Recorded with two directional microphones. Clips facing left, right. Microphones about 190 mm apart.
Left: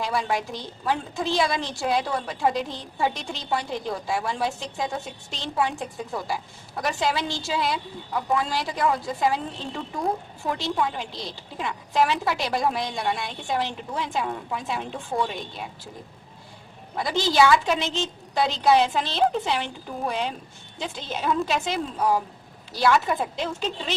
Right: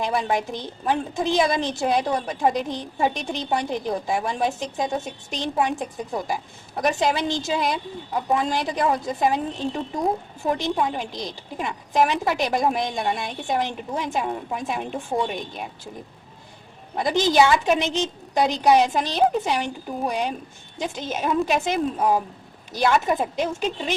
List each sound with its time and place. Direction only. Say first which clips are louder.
0.0 s a woman's voice: right 3 dB; 20° right (ahead or behind)
16.9 s a woman's voice: right 4 dB; 20° right (ahead or behind)